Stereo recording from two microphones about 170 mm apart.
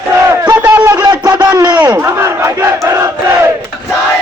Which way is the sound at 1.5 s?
25° right (ahead or behind).